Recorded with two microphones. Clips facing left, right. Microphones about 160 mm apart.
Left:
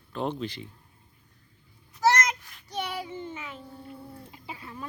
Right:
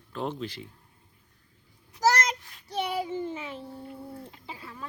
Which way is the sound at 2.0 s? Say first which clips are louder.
Left 1 dB; 35° right (ahead or behind).